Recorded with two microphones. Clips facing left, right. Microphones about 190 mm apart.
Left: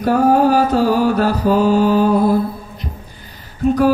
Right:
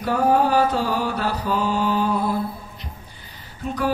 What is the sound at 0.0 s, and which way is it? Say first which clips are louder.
Mantra: left 6 dB; 40° left (ahead or behind).